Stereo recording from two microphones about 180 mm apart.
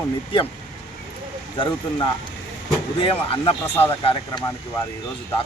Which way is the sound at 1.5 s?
25° left (ahead or behind).